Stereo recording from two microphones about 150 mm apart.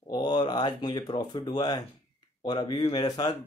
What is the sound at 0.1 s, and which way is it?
Speech, 30° left (ahead or behind).